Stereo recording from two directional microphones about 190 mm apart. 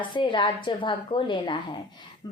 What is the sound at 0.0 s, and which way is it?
Speech, 25° left (ahead or behind).